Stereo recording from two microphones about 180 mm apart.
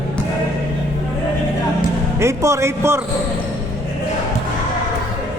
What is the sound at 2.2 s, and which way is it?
Speech, 15° right (ahead or behind).